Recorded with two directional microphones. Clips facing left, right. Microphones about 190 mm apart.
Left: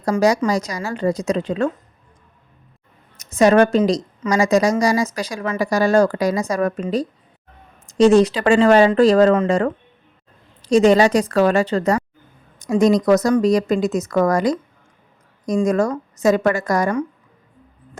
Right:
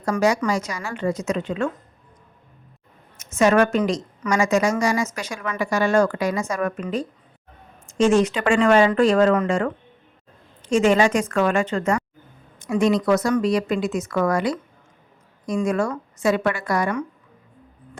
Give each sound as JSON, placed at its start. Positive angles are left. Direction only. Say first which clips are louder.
{"t": 0.0, "sound": "speech", "louder": "left 3 dB", "side_deg": 35}
{"t": 3.2, "sound": "a woman's voice", "louder": "left 4 dB", "side_deg": 35}